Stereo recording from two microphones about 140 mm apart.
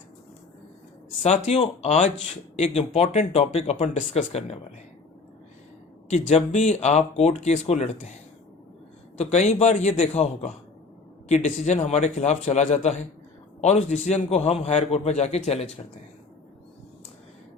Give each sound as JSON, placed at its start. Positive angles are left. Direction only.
{"t": 1.2, "sound": "speech", "side_deg": 50}
{"t": 6.1, "sound": "speech", "side_deg": 55}
{"t": 9.1, "sound": "a man's voice", "side_deg": 50}